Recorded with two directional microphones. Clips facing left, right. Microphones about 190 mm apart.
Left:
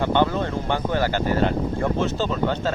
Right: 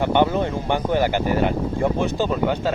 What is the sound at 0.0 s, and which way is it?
Speech, 15° right (ahead or behind).